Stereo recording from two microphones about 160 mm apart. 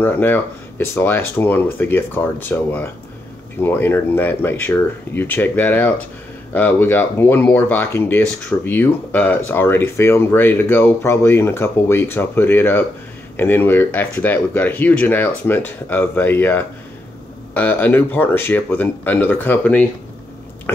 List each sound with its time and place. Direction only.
0.0 s speech: 15° left (ahead or behind)